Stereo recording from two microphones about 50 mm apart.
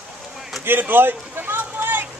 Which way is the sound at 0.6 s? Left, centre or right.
Right.